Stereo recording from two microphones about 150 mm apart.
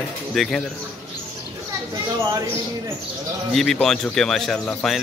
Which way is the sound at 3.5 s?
Centre (ahead or behind).